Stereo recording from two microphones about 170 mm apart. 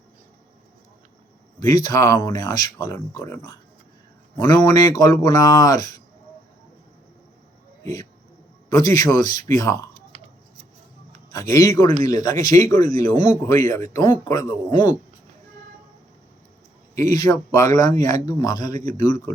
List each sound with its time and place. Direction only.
1.5 s speech: 20° left (ahead or behind)
8.7 s speech: 20° left (ahead or behind)
11.3 s speech: 20° left (ahead or behind)
16.9 s speech: 20° left (ahead or behind)